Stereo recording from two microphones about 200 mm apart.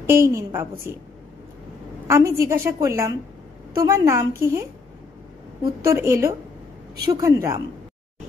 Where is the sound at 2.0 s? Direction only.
15° right (ahead or behind).